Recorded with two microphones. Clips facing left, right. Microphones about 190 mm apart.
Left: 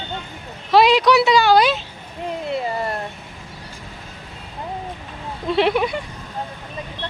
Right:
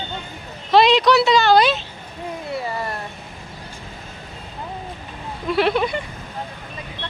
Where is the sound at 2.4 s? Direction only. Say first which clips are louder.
Left 3 dB; 20° left (ahead or behind).